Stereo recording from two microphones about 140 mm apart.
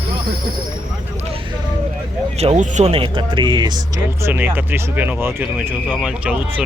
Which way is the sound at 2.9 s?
40° right (ahead or behind).